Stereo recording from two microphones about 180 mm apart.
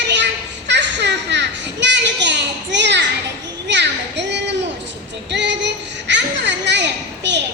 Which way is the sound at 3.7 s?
75° right (ahead or behind).